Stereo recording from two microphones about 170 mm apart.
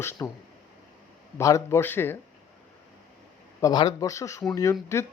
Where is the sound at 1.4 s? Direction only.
15° left (ahead or behind).